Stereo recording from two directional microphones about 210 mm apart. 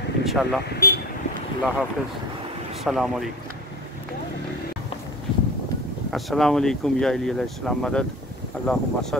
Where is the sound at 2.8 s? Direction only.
Centre (ahead or behind).